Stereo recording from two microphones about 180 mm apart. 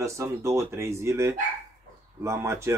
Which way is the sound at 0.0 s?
15° right (ahead or behind).